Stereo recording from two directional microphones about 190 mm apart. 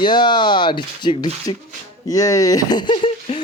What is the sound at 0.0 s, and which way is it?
Speech, 25° left (ahead or behind).